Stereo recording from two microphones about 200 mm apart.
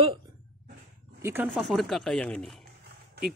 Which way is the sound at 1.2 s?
10° right (ahead or behind).